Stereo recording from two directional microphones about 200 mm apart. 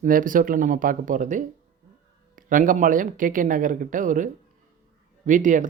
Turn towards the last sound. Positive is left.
turn(degrees=-40)  # may be behind; listen again after turning